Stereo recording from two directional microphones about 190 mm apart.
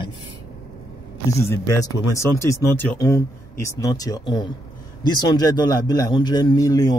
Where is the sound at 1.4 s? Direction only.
15° left (ahead or behind).